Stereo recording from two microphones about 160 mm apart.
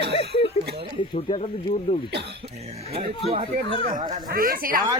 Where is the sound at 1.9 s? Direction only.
30° left (ahead or behind).